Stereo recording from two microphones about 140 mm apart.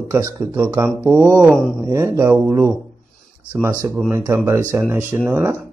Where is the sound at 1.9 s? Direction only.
20° right (ahead or behind).